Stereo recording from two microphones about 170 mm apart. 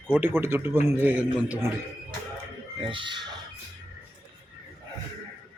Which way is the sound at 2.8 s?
30° right (ahead or behind).